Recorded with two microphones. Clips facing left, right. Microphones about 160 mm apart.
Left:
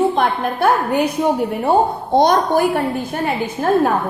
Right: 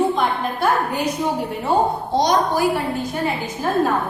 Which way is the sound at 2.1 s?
55° left (ahead or behind).